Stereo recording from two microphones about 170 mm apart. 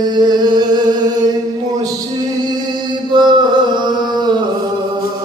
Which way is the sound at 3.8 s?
25° right (ahead or behind).